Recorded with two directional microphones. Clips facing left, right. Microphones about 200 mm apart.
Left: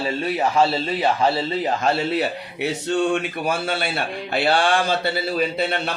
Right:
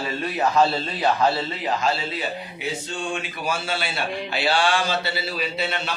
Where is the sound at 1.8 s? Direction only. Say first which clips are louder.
Left 5 dB; 60° left (ahead or behind).